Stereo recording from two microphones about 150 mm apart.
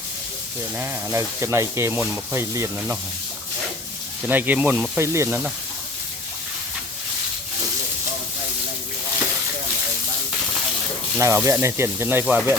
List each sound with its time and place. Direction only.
0.8 s speech: 20° right (ahead or behind)
4.2 s speech: 10° right (ahead or behind)
11.2 s speech: 20° right (ahead or behind)
12.2 s speech: centre (ahead or behind)